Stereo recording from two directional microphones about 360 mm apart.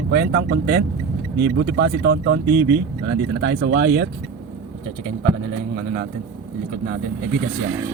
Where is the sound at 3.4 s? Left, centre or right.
Right.